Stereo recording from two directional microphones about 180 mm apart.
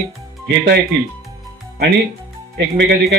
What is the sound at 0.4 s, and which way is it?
Speech, 65° right (ahead or behind).